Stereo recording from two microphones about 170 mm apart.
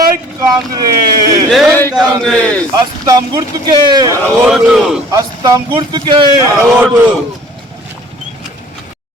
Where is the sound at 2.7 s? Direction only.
25° right (ahead or behind).